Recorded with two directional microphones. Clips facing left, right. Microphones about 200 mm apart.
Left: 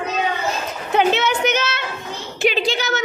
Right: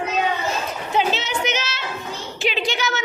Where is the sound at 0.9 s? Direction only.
60° left (ahead or behind).